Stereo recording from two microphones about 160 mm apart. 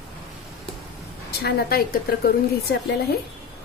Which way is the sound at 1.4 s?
70° left (ahead or behind).